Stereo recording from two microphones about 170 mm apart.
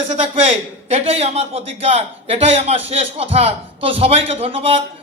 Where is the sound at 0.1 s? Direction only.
40° right (ahead or behind).